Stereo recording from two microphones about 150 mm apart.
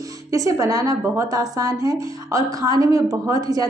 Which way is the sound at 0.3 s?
20° right (ahead or behind).